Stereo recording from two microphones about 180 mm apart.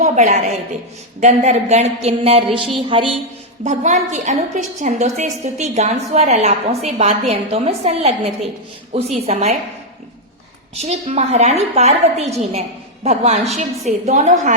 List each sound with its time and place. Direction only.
0.0 s a woman's voice: 40° right (ahead or behind)
2.7 s music: 30° right (ahead or behind)
3.6 s a woman's voice: 40° right (ahead or behind)
10.8 s a woman's voice: 35° right (ahead or behind)
12.2 s a woman's voice: centre (ahead or behind)
13.1 s a woman's voice: 35° right (ahead or behind)